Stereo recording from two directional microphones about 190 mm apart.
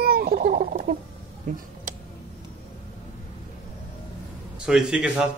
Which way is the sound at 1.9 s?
45° right (ahead or behind).